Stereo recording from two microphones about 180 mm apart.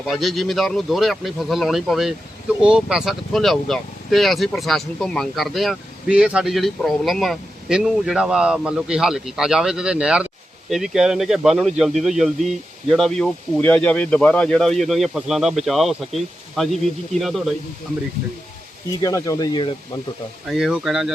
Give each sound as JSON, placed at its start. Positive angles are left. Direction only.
{"t": 0.0, "sound": "speech", "side_deg": 0}
{"t": 18.9, "sound": "speech", "side_deg": 20}
{"t": 20.5, "sound": "speech", "side_deg": -5}